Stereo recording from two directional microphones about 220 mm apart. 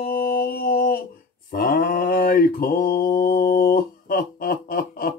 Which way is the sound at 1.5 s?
40° left (ahead or behind).